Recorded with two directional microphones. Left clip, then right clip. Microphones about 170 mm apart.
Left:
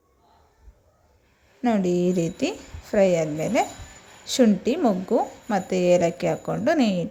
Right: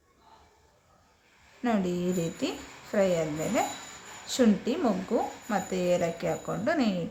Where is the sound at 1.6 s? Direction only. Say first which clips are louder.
Left 7 dB; 35° left (ahead or behind).